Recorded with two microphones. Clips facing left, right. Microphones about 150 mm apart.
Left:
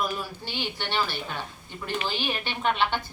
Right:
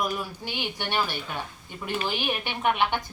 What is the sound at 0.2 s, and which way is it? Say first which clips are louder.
A woman's voice: right 1 dB; 15° right (ahead or behind).